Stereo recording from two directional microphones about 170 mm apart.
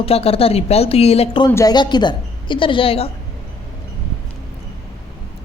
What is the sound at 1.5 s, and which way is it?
Speech, 15° left (ahead or behind).